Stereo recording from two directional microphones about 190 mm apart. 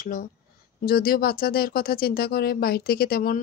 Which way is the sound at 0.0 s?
45° left (ahead or behind).